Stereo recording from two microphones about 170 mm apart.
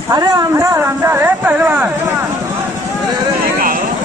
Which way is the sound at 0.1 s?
20° right (ahead or behind).